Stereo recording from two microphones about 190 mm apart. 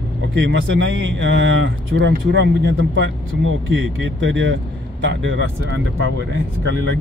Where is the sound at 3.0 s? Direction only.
90° right.